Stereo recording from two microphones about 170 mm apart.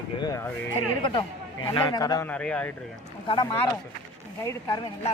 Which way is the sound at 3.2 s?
30° left (ahead or behind).